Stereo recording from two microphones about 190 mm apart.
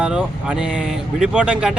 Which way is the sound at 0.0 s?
5° right (ahead or behind).